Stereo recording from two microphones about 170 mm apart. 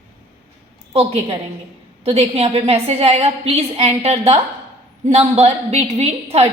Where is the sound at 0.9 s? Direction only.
35° right (ahead or behind).